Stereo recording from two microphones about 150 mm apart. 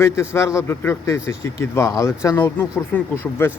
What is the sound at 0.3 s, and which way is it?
Speech, 20° left (ahead or behind).